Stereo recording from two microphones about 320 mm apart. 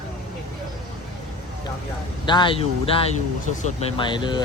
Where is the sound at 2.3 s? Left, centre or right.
Centre.